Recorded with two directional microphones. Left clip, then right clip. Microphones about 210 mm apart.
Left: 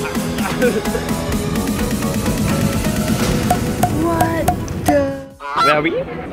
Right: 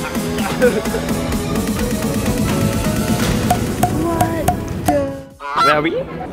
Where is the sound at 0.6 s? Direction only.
Centre (ahead or behind).